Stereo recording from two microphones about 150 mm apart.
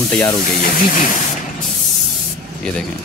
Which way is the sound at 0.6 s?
60° left (ahead or behind).